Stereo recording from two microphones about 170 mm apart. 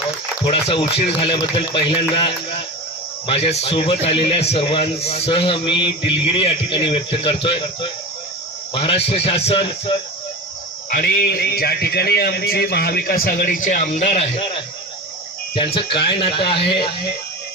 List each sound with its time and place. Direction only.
0.4 s a man's voice: 30° left (ahead or behind)
10.8 s a man's voice: 55° left (ahead or behind); by 16.9 s 30° left (ahead or behind)